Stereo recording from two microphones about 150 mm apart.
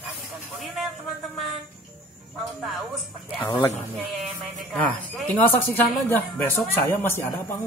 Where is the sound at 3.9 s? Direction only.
Centre (ahead or behind).